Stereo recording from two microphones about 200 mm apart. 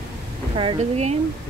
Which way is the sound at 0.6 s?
30° right (ahead or behind).